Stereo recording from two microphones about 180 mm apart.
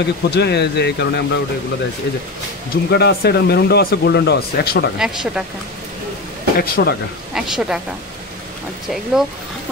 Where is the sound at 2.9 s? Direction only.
65° left (ahead or behind).